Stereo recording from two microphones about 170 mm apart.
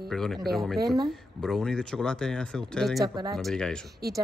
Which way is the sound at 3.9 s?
70° right (ahead or behind).